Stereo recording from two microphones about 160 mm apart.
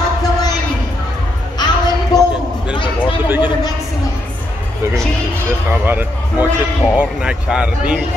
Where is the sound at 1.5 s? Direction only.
25° left (ahead or behind).